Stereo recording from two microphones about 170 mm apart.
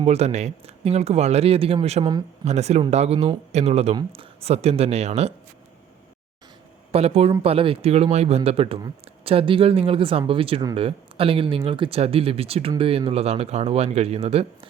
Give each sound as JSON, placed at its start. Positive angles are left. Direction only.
{"t": 0.0, "sound": "speech", "side_deg": -40}
{"t": 6.9, "sound": "speech", "side_deg": -35}